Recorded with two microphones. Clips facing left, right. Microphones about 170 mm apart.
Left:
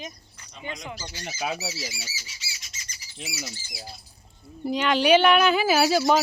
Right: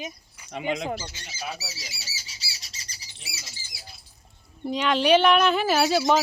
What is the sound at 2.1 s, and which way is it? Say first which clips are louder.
Squawk: left 1 dB; 35° right (ahead or behind).